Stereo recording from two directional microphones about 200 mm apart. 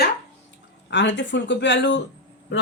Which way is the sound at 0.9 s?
60° left (ahead or behind).